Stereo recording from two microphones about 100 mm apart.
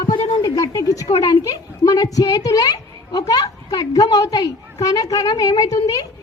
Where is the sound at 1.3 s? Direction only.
40° left (ahead or behind).